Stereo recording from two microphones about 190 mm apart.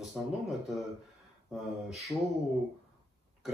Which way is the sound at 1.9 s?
Centre (ahead or behind).